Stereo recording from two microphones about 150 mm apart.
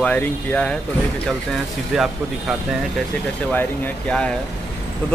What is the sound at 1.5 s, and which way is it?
Speech, 5° right (ahead or behind).